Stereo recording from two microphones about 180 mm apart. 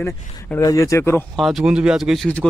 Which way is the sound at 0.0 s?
15° left (ahead or behind).